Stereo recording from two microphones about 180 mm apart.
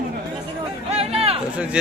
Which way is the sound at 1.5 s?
5° right (ahead or behind).